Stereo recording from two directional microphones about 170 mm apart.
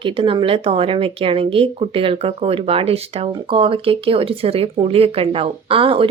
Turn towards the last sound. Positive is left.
turn(degrees=-30)  # may be behind; listen again after turning